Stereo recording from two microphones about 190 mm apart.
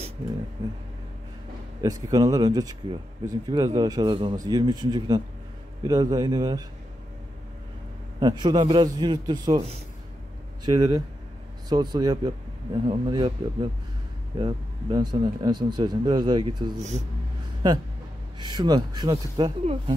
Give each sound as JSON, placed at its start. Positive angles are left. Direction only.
{"t": 1.8, "sound": "speech", "side_deg": -20}
{"t": 8.2, "sound": "speech", "side_deg": -25}
{"t": 18.4, "sound": "speech", "side_deg": -20}